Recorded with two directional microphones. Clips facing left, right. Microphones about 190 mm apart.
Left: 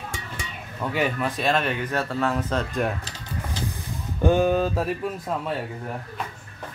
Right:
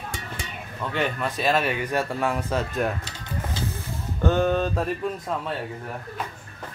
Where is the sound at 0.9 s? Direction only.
5° left (ahead or behind).